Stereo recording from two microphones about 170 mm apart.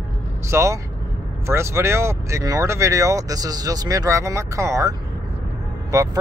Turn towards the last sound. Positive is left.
turn(degrees=-20)  # may be behind; listen again after turning